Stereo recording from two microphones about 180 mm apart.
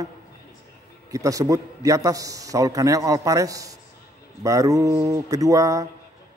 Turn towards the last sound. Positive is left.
turn(degrees=-20)  # may be behind; listen again after turning